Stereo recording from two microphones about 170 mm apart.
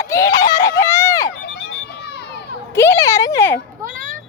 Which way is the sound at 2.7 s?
20° left (ahead or behind).